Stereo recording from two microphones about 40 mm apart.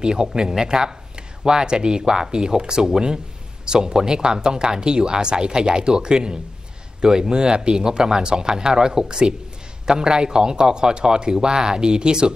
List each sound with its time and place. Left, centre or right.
0.0 s speech: centre